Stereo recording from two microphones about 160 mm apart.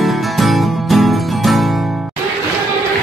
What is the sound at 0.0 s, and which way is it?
Music, centre (ahead or behind).